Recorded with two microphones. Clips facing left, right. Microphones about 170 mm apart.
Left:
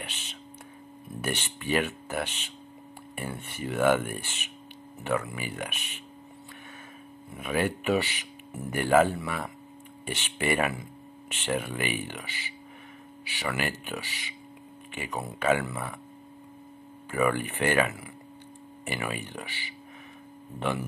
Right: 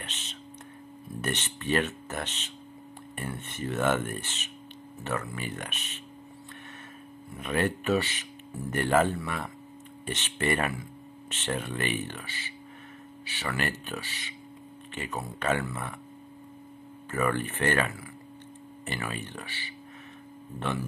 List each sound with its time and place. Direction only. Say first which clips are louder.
0.0 s whispering: left 1 dB; 10° left (ahead or behind)
1.1 s speech: even; 10° left (ahead or behind)
7.3 s speech: even; 10° left (ahead or behind)
17.1 s speech: left 2 dB; 10° left (ahead or behind)